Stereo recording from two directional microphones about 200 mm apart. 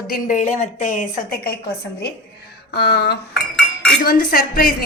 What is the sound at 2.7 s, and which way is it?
A woman's voice, 55° left (ahead or behind).